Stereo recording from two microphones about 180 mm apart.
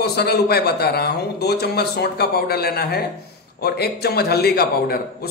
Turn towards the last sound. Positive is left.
turn(degrees=60)  # may be behind; listen again after turning